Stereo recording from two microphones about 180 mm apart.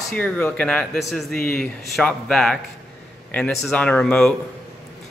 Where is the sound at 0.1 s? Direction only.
10° left (ahead or behind).